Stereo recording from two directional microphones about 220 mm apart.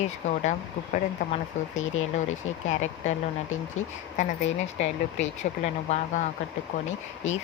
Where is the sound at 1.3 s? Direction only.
35° left (ahead or behind).